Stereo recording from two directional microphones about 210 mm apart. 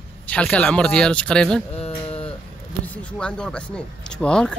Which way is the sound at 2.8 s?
5° left (ahead or behind).